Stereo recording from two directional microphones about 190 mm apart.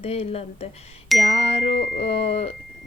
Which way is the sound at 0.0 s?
35° left (ahead or behind).